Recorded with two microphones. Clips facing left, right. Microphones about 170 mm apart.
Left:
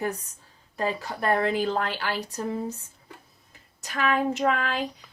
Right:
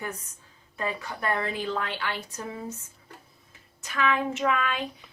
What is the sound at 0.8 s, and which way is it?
Speech, 35° left (ahead or behind).